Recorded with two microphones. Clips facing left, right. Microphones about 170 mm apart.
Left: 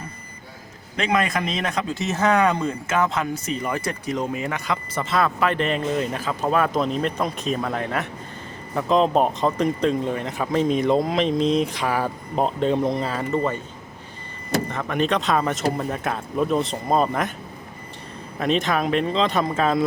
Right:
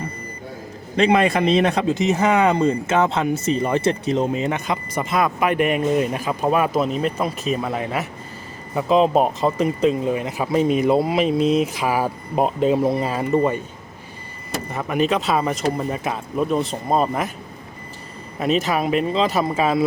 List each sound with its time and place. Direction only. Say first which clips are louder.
0.9 s a man's voice: right 6 dB; 30° right (ahead or behind)
2.0 s speech: even; 15° right (ahead or behind)
14.7 s speech: right 6 dB; 10° right (ahead or behind)
18.3 s speech: right 2 dB; 5° right (ahead or behind)